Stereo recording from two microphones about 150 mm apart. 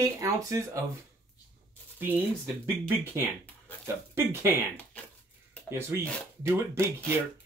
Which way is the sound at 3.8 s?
15° right (ahead or behind).